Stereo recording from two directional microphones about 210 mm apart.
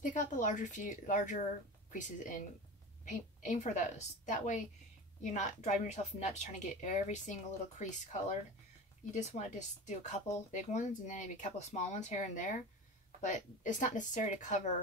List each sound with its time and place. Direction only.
0.0 s speech: 40° left (ahead or behind)